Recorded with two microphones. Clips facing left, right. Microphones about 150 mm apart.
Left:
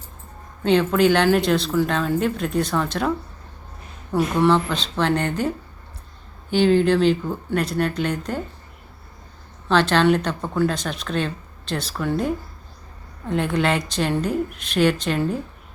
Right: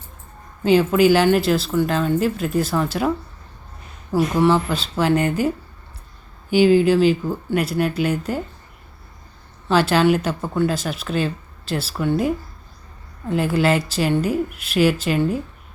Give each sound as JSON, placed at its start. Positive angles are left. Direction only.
{"t": 0.6, "sound": "speech", "side_deg": -5}
{"t": 4.1, "sound": "speech", "side_deg": 0}
{"t": 9.6, "sound": "speech", "side_deg": -10}